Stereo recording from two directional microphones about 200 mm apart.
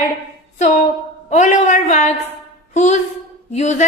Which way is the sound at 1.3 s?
35° left (ahead or behind).